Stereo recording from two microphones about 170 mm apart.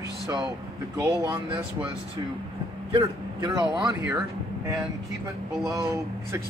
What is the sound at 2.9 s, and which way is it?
Speech, 25° right (ahead or behind).